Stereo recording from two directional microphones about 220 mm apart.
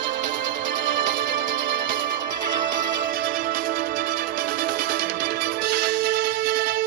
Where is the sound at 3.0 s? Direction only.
40° right (ahead or behind).